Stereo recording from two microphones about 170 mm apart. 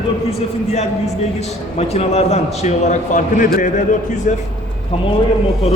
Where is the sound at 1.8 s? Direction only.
35° left (ahead or behind).